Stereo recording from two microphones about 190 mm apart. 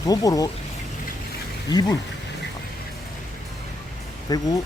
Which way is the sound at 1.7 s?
20° left (ahead or behind).